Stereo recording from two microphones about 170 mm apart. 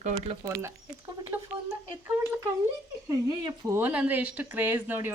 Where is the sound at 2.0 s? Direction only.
15° right (ahead or behind).